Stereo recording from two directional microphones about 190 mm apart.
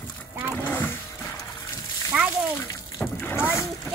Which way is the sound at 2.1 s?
5° right (ahead or behind).